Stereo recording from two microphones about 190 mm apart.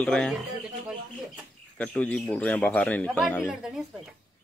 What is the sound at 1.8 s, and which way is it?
Speech, 5° left (ahead or behind).